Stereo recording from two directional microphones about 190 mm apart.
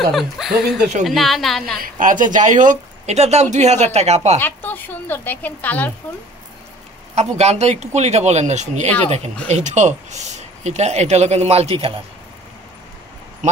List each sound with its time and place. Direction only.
0.1 s a woman's voice: centre (ahead or behind)
1.8 s speech: 45° right (ahead or behind)
4.4 s speech: 10° left (ahead or behind)
7.2 s speech: 35° right (ahead or behind)